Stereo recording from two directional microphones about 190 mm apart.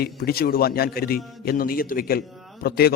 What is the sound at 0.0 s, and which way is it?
A man's voice, 55° left (ahead or behind).